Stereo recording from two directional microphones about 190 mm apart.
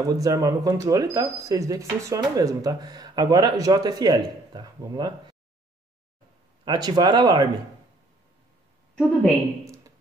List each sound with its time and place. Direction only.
0.2 s speech: 20° right (ahead or behind)
6.6 s speech: 20° right (ahead or behind)
8.9 s a woman's voice: centre (ahead or behind)